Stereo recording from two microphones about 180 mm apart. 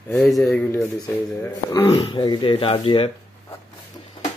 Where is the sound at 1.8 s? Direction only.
30° left (ahead or behind).